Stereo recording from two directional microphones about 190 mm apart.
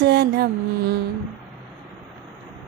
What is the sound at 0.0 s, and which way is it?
Mantra, 55° right (ahead or behind).